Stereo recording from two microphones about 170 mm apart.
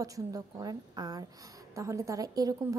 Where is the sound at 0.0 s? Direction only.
20° right (ahead or behind).